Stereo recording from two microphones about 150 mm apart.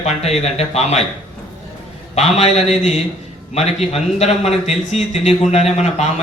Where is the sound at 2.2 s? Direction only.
45° left (ahead or behind).